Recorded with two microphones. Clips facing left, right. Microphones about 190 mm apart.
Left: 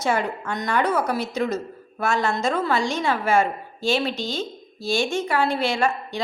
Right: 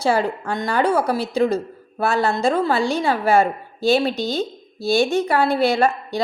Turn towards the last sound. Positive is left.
turn(degrees=-35)  # may be behind; listen again after turning